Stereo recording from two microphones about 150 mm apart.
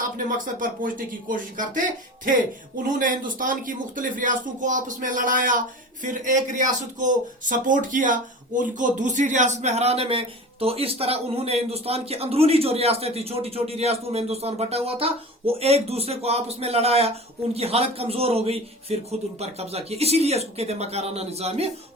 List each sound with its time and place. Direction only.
0.3 s a man's voice: 65° right (ahead or behind)
2.8 s a man's voice: 65° right (ahead or behind); by 21.7 s 45° right (ahead or behind)